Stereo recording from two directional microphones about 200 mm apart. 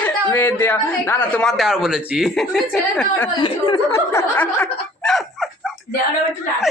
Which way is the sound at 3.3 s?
25° left (ahead or behind).